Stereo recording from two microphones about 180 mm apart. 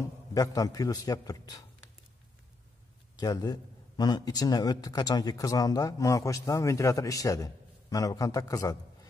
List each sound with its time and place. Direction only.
0.3 s a man's voice: 20° left (ahead or behind)
3.2 s a man's voice: 20° left (ahead or behind)